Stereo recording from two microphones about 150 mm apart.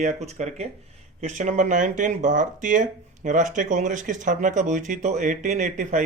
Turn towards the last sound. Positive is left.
turn(degrees=-55)  # may be behind; listen again after turning